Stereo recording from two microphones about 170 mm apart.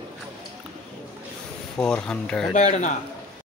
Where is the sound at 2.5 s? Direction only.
45° left (ahead or behind).